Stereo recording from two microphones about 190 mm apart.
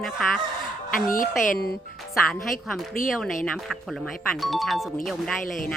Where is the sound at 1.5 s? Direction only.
55° left (ahead or behind).